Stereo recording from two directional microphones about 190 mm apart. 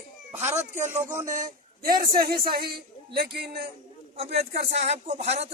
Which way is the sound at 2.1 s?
55° right (ahead or behind).